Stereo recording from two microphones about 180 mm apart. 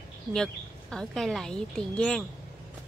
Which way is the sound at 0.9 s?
Centre (ahead or behind).